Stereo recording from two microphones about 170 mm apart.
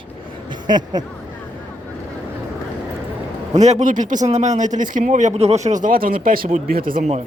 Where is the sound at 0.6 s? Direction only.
25° right (ahead or behind).